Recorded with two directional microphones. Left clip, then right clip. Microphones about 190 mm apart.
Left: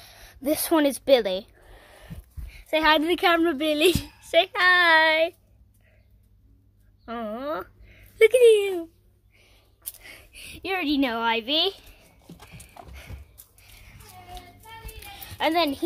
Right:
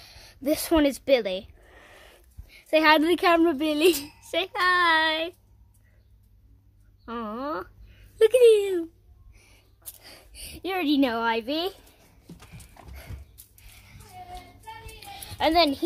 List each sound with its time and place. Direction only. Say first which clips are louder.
0.0 s speech: even; centre (ahead or behind)
1.8 s speech: left 1 dB; 10° right (ahead or behind)
7.1 s speech: left 1 dB; 5° right (ahead or behind)
9.3 s a sound: even; 25° right (ahead or behind)
10.0 s a woman's voice: left 2 dB; 10° right (ahead or behind)
12.4 s dog: left 4 dB; 5° right (ahead or behind)
13.6 s music: left 1 dB; centre (ahead or behind)
15.0 s music: right 1 dB; centre (ahead or behind)